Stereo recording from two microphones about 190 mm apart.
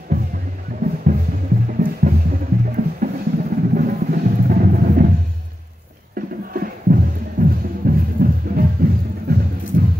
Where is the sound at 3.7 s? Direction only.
50° right (ahead or behind).